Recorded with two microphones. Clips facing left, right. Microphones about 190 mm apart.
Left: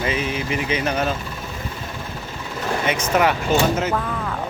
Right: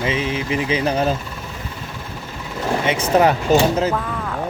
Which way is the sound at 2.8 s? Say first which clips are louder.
Right 3 dB; 30° right (ahead or behind).